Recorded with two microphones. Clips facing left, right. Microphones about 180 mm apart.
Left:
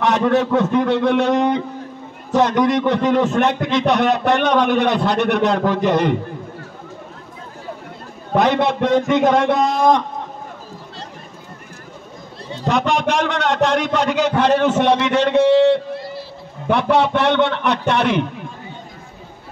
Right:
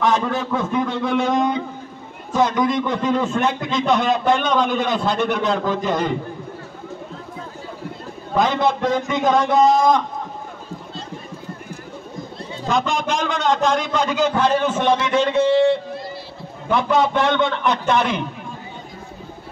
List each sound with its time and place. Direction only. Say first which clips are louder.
0.0 s a man's voice: left 4 dB; 70° left (ahead or behind)
2.6 s a man's voice: left 4 dB; 70° left (ahead or behind)
8.4 s a man's voice: left 2 dB; 70° left (ahead or behind)
12.5 s a man's voice: left 3 dB; 70° left (ahead or behind)